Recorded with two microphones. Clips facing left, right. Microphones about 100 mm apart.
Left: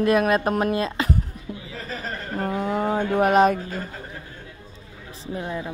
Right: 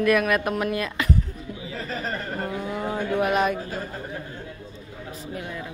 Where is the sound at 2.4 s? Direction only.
45° left (ahead or behind).